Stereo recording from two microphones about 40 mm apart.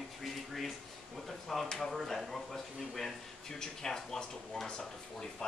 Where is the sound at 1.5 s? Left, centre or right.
Centre.